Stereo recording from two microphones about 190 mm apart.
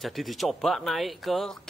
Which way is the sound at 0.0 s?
Centre (ahead or behind).